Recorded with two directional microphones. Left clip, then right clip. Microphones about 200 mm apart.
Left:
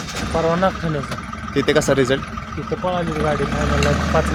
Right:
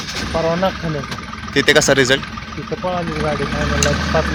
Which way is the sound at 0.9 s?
50° left (ahead or behind).